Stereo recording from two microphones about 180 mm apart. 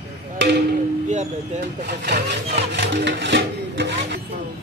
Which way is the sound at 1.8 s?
65° right (ahead or behind).